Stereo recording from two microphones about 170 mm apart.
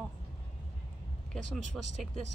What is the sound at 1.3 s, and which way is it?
Speech, 45° right (ahead or behind).